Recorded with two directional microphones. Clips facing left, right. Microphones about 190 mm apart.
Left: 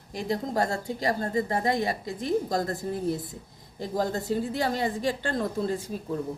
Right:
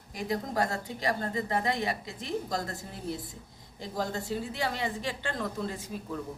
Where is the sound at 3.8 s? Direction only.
40° left (ahead or behind).